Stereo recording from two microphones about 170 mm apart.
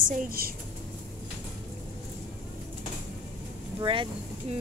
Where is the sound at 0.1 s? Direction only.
55° right (ahead or behind).